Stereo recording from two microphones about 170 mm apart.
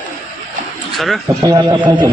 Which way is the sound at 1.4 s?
20° right (ahead or behind).